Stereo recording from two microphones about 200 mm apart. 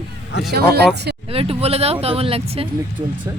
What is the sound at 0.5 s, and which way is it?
Speech, 50° right (ahead or behind).